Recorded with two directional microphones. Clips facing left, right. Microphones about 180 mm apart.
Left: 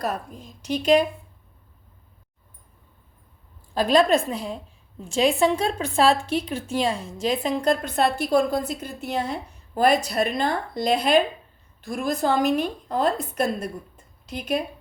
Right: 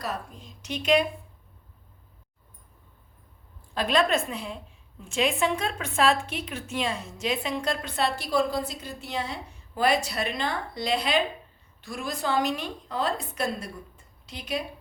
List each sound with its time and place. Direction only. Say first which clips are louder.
0.0 s a woman's voice: left 5 dB; 50° left (ahead or behind)
0.6 s a woman's voice: left 4 dB; 35° left (ahead or behind)
3.8 s a woman's voice: left 6 dB; 35° left (ahead or behind)